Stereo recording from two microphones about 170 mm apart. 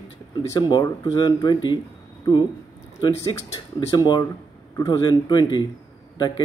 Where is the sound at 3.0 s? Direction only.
15° left (ahead or behind).